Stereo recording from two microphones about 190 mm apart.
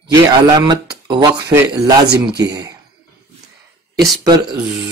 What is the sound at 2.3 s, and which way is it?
Speech, 20° right (ahead or behind).